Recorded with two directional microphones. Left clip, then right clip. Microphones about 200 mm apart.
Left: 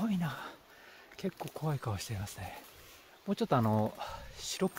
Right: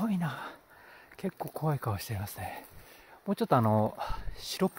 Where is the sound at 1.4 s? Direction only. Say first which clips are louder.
Right 8 dB; 25° right (ahead or behind).